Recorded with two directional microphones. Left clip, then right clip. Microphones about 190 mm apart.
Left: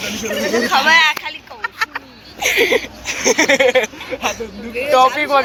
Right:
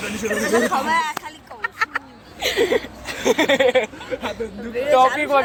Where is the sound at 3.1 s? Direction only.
10° right (ahead or behind).